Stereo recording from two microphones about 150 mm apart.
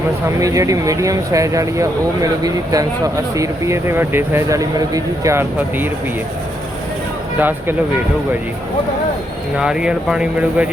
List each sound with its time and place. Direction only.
0.3 s speech: 20° right (ahead or behind)
7.3 s speech: 10° right (ahead or behind)
9.6 s speech: 5° right (ahead or behind)